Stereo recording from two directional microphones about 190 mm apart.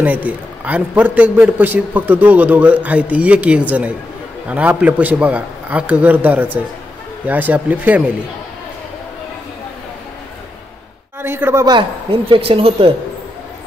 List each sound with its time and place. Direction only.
0.0 s a man's voice: 10° right (ahead or behind)
11.1 s a man's voice: 10° right (ahead or behind)
12.3 s speech: 30° right (ahead or behind)